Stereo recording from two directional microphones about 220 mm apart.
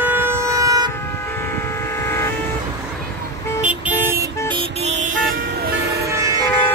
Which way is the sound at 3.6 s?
10° right (ahead or behind).